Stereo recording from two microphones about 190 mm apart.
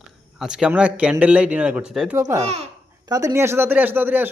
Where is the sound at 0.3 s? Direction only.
5° right (ahead or behind).